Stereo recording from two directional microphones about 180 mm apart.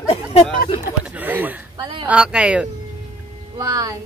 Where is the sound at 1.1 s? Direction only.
10° right (ahead or behind).